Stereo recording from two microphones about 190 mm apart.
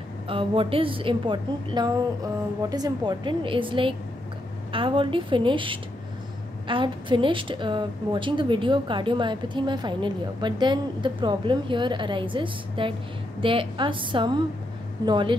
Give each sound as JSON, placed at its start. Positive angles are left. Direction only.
{"t": 0.3, "sound": "a woman's voice", "side_deg": -30}